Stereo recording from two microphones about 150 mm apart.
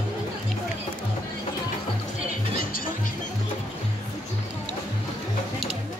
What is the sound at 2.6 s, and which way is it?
Music, 70° left (ahead or behind).